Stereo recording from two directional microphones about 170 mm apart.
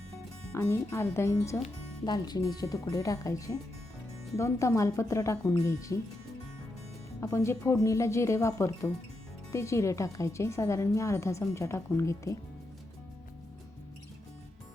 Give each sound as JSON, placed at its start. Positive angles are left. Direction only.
{"t": 0.5, "sound": "speech", "side_deg": 15}
{"t": 7.2, "sound": "speech", "side_deg": 15}